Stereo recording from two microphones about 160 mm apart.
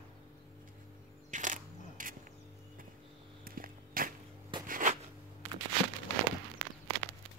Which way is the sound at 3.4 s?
65° right (ahead or behind).